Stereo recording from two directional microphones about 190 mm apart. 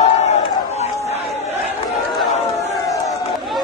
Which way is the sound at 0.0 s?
35° left (ahead or behind).